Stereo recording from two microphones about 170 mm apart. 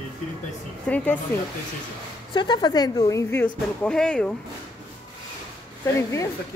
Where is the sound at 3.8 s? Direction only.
5° left (ahead or behind).